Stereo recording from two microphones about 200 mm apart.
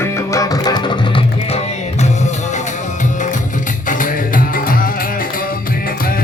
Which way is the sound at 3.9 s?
40° left (ahead or behind).